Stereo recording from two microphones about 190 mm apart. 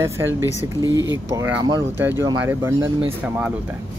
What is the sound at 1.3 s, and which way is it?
Speech, 15° right (ahead or behind).